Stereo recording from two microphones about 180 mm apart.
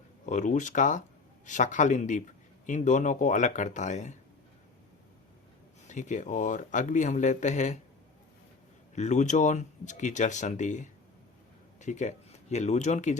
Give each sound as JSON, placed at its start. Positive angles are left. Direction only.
{"t": 0.3, "sound": "speech", "side_deg": 45}
{"t": 5.9, "sound": "speech", "side_deg": 45}
{"t": 9.0, "sound": "speech", "side_deg": 40}